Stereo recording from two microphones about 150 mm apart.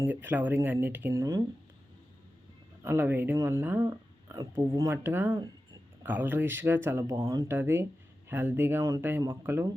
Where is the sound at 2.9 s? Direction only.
15° right (ahead or behind).